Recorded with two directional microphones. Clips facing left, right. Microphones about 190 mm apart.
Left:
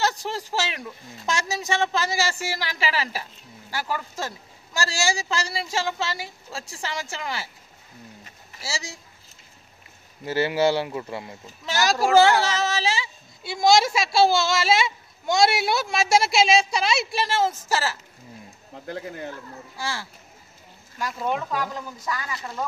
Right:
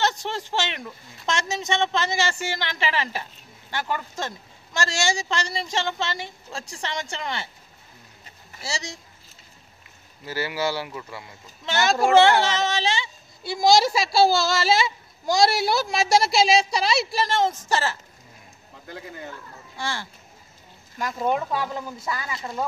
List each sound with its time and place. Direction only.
0.0 s a woman's voice: 10° left (ahead or behind)
8.5 s a woman's voice: 5° left (ahead or behind)
10.2 s speech: 25° left (ahead or behind)
12.0 s a woman's voice: 5° left (ahead or behind)
21.0 s speech: 15° right (ahead or behind)